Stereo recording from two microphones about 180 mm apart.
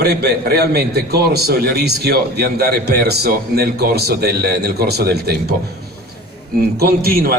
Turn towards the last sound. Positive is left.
turn(degrees=-55)  # may be behind; listen again after turning